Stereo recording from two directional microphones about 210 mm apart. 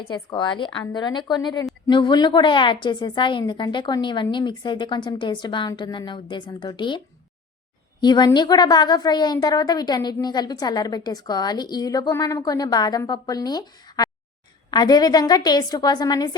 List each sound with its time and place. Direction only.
0.0 s a woman's voice: 20° left (ahead or behind)
8.0 s a woman's voice: 20° left (ahead or behind)